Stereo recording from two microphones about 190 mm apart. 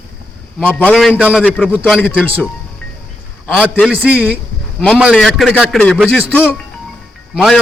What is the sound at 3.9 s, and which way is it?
A man's voice, 5° right (ahead or behind).